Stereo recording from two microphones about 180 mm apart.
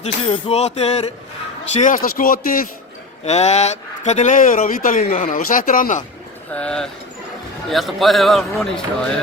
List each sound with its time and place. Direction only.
0.0 s music: 35° left (ahead or behind)
1.7 s speech: 45° left (ahead or behind)
3.2 s speech: 40° left (ahead or behind)
6.5 s a man's voice: 5° left (ahead or behind)